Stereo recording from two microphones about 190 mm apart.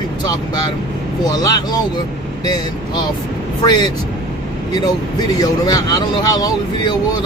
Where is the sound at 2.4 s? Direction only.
20° left (ahead or behind).